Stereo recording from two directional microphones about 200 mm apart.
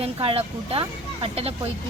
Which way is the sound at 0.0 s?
30° right (ahead or behind).